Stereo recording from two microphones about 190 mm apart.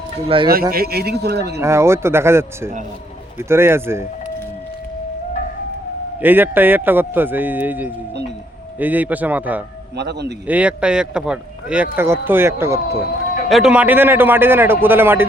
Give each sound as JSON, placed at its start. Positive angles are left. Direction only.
{"t": 0.3, "sound": "speech", "side_deg": -30}
{"t": 0.7, "sound": "a man's voice", "side_deg": -55}
{"t": 1.6, "sound": "speech", "side_deg": -15}
{"t": 6.2, "sound": "speech", "side_deg": -10}
{"t": 10.0, "sound": "a man's voice", "side_deg": -60}
{"t": 10.4, "sound": "speech", "side_deg": -5}
{"t": 13.5, "sound": "speech", "side_deg": -5}